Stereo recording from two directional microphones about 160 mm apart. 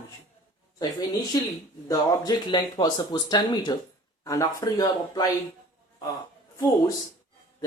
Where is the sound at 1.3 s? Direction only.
25° left (ahead or behind).